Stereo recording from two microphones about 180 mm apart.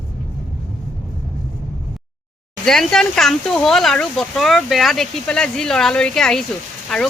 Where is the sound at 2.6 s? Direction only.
5° left (ahead or behind).